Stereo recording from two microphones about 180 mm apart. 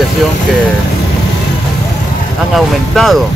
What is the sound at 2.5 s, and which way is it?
Speech, centre (ahead or behind).